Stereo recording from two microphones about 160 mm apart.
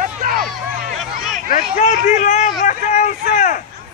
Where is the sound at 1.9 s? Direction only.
45° left (ahead or behind).